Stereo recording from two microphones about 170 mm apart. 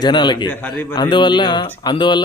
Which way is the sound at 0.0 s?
25° left (ahead or behind).